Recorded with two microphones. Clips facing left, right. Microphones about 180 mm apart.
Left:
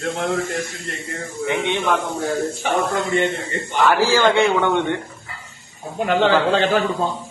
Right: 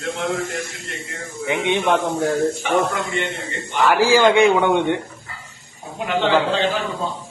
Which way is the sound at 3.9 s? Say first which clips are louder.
Right 2 dB; 15° right (ahead or behind).